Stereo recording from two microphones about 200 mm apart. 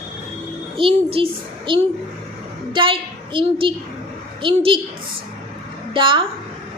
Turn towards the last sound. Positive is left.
turn(degrees=-25)  # may be behind; listen again after turning